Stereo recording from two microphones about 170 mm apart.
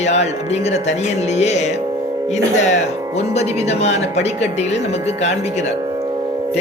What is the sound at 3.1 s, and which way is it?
Speech, 40° left (ahead or behind).